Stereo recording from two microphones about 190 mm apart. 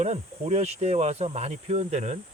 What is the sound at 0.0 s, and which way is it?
Speech, 35° right (ahead or behind).